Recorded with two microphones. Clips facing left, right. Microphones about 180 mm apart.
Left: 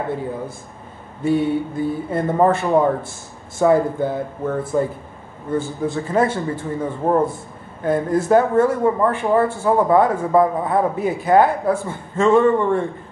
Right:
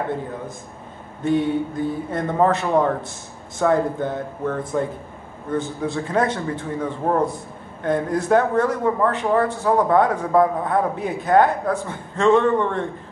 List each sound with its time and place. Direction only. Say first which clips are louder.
1.2 s a man's voice: left 1 dB; 5° left (ahead or behind)